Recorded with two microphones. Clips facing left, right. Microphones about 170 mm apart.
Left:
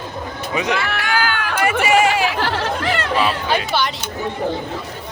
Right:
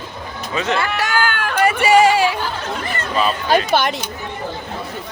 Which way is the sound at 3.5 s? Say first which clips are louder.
Right 8 dB; 40° right (ahead or behind).